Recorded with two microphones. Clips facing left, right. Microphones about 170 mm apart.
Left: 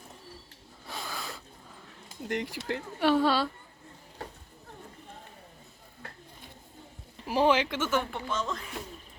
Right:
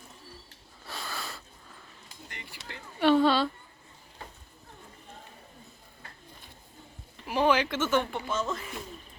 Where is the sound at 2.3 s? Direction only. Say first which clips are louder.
Left 15 dB; 85° left.